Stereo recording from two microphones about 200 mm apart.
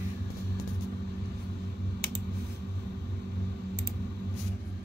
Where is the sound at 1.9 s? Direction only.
55° right (ahead or behind).